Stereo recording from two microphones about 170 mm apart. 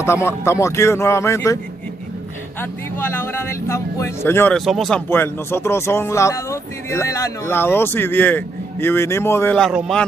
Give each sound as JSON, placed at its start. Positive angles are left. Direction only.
{"t": 0.0, "sound": "speech", "side_deg": 15}
{"t": 2.6, "sound": "speech", "side_deg": 15}
{"t": 4.6, "sound": "speech", "side_deg": 0}
{"t": 5.1, "sound": "speech", "side_deg": 15}
{"t": 9.6, "sound": "speech", "side_deg": 0}